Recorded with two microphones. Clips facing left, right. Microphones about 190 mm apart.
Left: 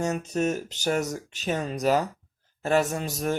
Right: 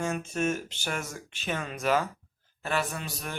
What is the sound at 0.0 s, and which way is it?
Speech, 40° left (ahead or behind).